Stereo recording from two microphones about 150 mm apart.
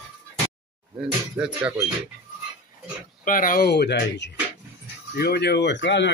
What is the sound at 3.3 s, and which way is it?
Speech, 65° left (ahead or behind).